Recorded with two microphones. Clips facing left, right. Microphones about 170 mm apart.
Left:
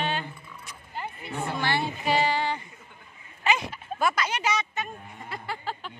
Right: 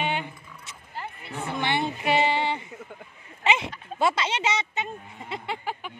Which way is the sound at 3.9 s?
25° right (ahead or behind).